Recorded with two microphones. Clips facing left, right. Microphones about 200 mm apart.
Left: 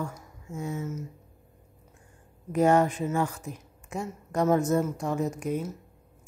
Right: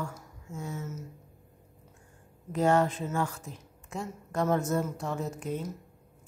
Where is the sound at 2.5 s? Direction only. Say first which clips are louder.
Left 3 dB; 15° left (ahead or behind).